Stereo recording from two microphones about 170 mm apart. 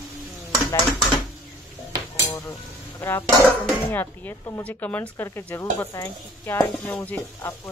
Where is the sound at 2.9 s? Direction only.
15° left (ahead or behind).